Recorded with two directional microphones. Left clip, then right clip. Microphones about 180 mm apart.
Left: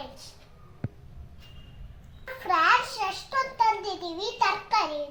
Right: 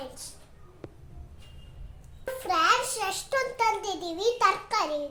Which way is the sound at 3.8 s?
45° right (ahead or behind).